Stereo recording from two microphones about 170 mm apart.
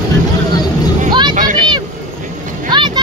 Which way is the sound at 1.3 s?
50° right (ahead or behind).